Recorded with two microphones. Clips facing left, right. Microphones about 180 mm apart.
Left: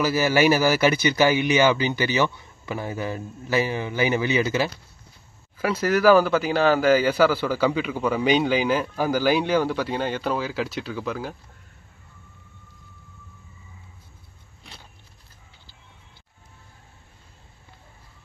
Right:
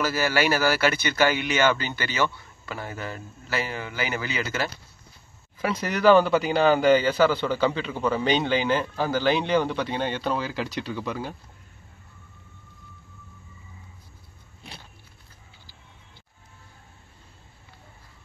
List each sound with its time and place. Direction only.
0.0 s speech: 15° left (ahead or behind)
5.6 s speech: 5° left (ahead or behind)